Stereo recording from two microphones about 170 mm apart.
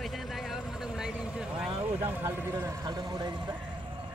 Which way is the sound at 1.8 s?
10° right (ahead or behind).